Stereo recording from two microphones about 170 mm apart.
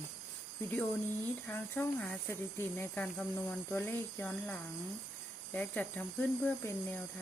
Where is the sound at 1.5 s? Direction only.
10° left (ahead or behind).